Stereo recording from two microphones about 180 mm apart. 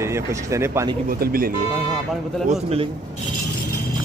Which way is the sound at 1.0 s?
55° right (ahead or behind).